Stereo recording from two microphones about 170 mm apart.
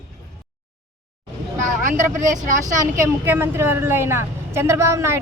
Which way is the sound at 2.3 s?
45° right (ahead or behind).